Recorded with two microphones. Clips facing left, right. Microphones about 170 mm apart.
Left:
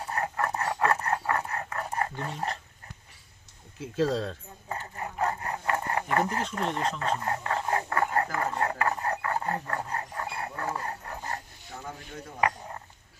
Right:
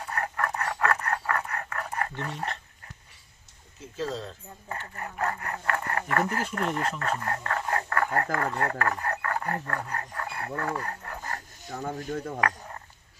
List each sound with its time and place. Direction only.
0.1 s a sound: 25° left (ahead or behind)
2.3 s speech: centre (ahead or behind)
3.9 s speech: 60° left (ahead or behind)
4.7 s speech: 20° left (ahead or behind)
10.6 s dog: 20° left (ahead or behind)
11.9 s speech: 45° right (ahead or behind)